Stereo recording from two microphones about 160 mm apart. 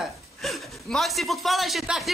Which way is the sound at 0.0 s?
Centre (ahead or behind).